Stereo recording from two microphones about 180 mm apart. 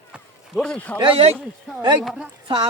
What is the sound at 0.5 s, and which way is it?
Speech, 5° left (ahead or behind).